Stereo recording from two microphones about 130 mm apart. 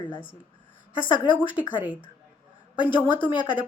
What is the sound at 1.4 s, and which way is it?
Speech, 10° right (ahead or behind).